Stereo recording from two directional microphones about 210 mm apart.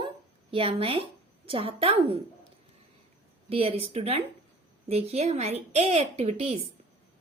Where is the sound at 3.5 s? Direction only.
30° right (ahead or behind).